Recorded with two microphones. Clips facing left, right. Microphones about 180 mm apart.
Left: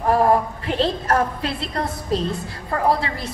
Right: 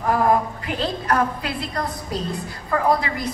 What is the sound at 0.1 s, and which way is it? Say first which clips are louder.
A woman's voice: left 2 dB; 30° left (ahead or behind).